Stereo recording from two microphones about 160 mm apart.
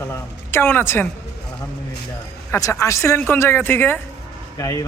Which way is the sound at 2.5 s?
20° left (ahead or behind).